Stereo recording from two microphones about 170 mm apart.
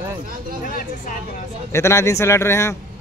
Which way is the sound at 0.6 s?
55° left (ahead or behind).